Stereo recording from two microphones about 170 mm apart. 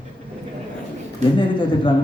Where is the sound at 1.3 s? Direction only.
30° left (ahead or behind).